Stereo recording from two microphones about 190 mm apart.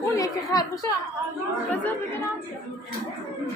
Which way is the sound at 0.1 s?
20° left (ahead or behind).